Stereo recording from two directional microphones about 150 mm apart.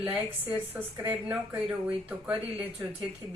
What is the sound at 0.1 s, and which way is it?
Speech, 10° right (ahead or behind).